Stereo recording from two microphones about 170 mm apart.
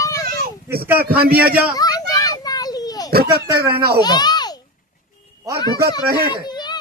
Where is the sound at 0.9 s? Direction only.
65° right (ahead or behind).